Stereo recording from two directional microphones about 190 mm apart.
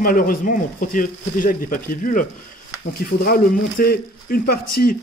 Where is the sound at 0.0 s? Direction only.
50° left (ahead or behind).